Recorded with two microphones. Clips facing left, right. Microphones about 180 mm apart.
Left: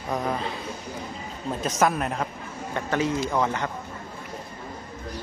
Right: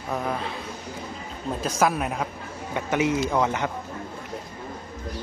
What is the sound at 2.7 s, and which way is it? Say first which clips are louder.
Speech: right 2 dB; 15° right (ahead or behind).